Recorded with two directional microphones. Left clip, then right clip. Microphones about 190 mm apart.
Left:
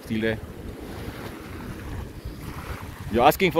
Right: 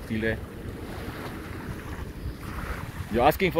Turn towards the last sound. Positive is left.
turn(degrees=25)  # may be behind; listen again after turning